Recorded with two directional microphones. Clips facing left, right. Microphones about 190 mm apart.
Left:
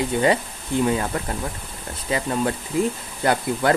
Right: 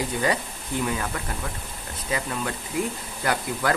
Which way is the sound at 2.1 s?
30° left (ahead or behind).